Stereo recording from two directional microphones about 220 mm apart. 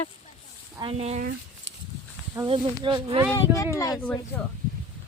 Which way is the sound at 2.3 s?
20° right (ahead or behind).